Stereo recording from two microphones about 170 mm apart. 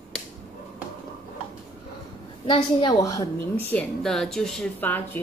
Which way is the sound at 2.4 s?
30° left (ahead or behind).